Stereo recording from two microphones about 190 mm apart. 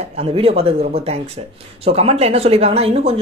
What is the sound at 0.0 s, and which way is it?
A woman's voice, 30° right (ahead or behind).